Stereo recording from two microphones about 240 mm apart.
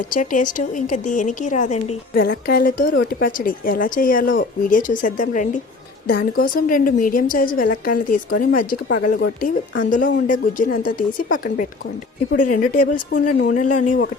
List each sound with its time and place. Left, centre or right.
0.1 s speech: left
8.9 s speech: left